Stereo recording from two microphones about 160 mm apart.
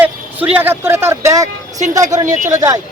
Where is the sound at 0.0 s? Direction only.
10° right (ahead or behind).